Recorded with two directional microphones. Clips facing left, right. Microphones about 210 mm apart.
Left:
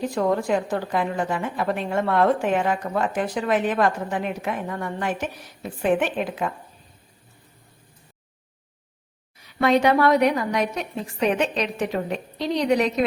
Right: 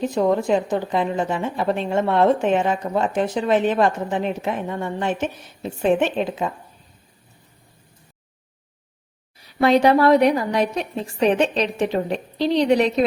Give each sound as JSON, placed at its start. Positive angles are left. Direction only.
{"t": 0.0, "sound": "a woman's voice", "side_deg": -20}
{"t": 9.4, "sound": "a woman's voice", "side_deg": -35}